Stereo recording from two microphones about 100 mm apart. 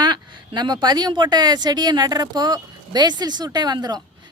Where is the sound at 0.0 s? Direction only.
45° right (ahead or behind).